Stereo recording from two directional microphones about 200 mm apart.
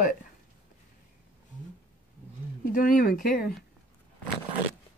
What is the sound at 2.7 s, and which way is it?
Speech, 45° left (ahead or behind).